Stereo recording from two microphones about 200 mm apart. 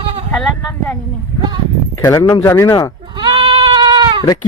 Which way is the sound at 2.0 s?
15° left (ahead or behind).